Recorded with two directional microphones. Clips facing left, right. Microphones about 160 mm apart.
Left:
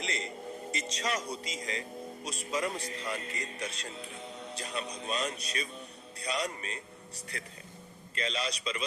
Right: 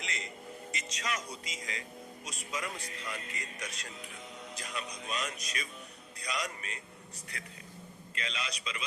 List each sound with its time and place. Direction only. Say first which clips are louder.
0.0 s music: left 5 dB; 35° left (ahead or behind)
0.7 s a man's voice: left 4 dB; 35° left (ahead or behind)